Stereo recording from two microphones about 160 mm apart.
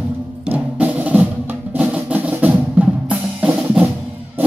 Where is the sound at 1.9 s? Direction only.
5° right (ahead or behind).